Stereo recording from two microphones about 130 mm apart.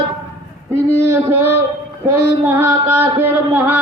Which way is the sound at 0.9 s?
20° right (ahead or behind).